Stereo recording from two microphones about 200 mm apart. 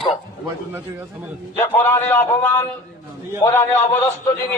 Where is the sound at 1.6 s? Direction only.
10° left (ahead or behind).